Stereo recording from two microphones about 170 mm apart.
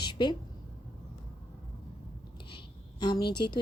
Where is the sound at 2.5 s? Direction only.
30° left (ahead or behind).